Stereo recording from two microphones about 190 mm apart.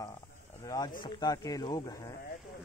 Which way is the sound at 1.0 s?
20° left (ahead or behind).